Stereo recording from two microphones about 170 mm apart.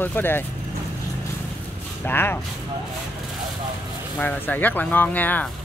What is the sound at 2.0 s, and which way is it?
Speech, 10° left (ahead or behind).